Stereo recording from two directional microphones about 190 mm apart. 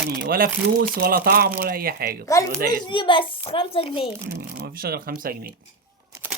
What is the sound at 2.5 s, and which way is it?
Speech, 50° right (ahead or behind).